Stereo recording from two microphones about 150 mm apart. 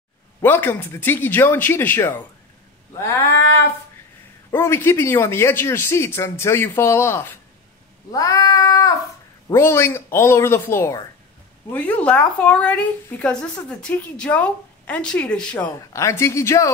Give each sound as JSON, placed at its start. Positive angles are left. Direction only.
{"t": 0.4, "sound": "speech", "side_deg": 15}
{"t": 15.9, "sound": "speech", "side_deg": 20}